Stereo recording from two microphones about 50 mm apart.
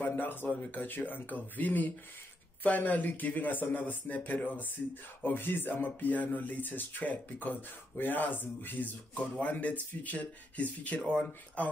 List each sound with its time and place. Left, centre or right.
0.0 s speech: left
9.1 s speech: left
11.0 s speech: centre
11.6 s speech: left